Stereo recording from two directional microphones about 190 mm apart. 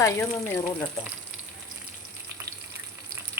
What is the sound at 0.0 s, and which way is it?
Speech, 15° left (ahead or behind).